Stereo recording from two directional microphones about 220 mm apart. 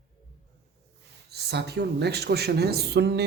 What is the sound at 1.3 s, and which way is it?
Speech, 50° right (ahead or behind).